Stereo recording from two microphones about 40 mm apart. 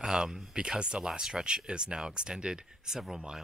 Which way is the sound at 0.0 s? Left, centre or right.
Centre.